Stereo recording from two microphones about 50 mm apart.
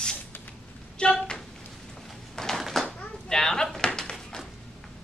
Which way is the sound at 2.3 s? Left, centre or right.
Centre.